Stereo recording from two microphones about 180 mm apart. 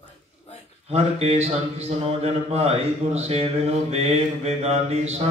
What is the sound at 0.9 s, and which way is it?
Speech, 35° right (ahead or behind).